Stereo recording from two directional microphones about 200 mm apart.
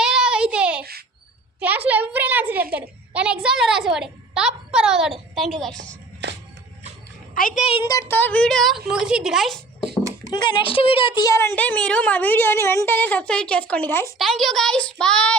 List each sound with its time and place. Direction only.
0.0 s child singing: 5° right (ahead or behind)
1.5 s a sound: 10° right (ahead or behind)
2.7 s a woman's voice: 5° right (ahead or behind)
6.2 s music: 60° right (ahead or behind)
7.3 s a woman's voice: 40° left (ahead or behind); by 10.0 s centre (ahead or behind)
10.3 s a woman's voice: 25° left (ahead or behind); by 15.4 s 5° left (ahead or behind)